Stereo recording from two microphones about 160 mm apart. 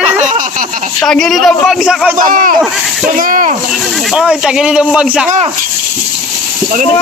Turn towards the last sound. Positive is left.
turn(degrees=-5)  # may be behind; listen again after turning